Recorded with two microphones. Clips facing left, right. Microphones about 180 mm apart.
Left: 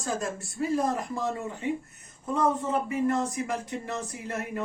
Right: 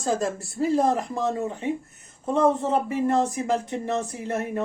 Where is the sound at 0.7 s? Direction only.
30° right (ahead or behind).